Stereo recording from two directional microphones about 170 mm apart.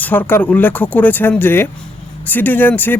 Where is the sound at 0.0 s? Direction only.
10° left (ahead or behind).